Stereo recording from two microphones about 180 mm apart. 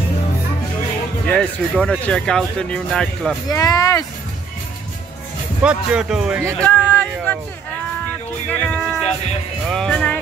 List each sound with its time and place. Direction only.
1.2 s speech: 5° left (ahead or behind)
3.4 s speech: 20° left (ahead or behind)
5.6 s speech: 5° right (ahead or behind)
6.6 s a sound: 10° left (ahead or behind)
8.5 s music: 5° left (ahead or behind)
9.7 s speech: 5° left (ahead or behind)